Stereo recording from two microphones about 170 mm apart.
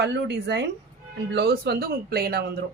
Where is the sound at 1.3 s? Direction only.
70° right (ahead or behind).